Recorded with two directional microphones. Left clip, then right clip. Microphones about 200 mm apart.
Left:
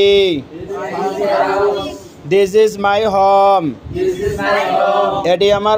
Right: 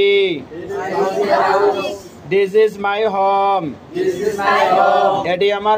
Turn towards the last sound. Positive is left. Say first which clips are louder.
# left 3 dB
turn(degrees=45)  # may be behind; listen again after turning